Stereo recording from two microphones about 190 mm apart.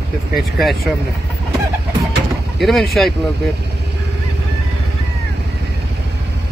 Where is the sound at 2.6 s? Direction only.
Centre (ahead or behind).